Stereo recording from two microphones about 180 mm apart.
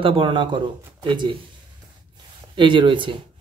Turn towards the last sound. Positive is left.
turn(degrees=-25)  # may be behind; listen again after turning